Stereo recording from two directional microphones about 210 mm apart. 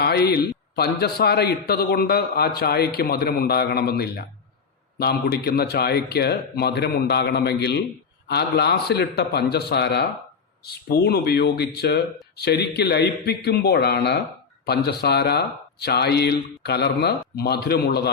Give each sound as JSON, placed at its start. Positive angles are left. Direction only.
{"t": 0.0, "sound": "a man's voice", "side_deg": 50}